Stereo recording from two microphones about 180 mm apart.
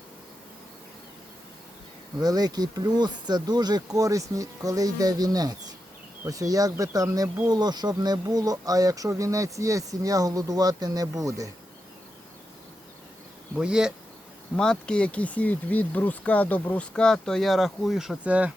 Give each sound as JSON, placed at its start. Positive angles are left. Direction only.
{"t": 2.1, "sound": "speech", "side_deg": -20}
{"t": 13.6, "sound": "speech", "side_deg": -5}